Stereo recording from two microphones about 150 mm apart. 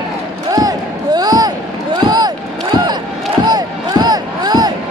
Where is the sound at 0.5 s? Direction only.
25° right (ahead or behind).